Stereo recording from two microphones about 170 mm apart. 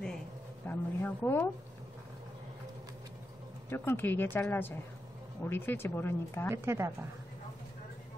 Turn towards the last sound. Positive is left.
turn(degrees=-15)  # may be behind; listen again after turning